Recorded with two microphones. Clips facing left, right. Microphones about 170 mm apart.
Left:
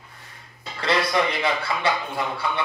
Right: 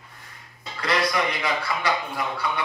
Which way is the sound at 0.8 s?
25° left (ahead or behind).